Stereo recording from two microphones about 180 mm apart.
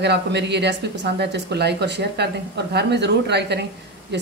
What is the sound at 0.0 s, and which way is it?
Speech, 70° right (ahead or behind).